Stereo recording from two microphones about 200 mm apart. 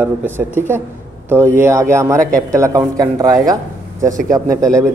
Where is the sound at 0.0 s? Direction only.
10° right (ahead or behind).